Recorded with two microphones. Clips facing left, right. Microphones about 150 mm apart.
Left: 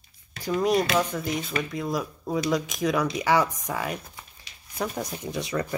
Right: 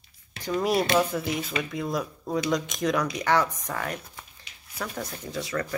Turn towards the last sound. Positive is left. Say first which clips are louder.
# left 2 dB
turn(degrees=20)  # may be behind; listen again after turning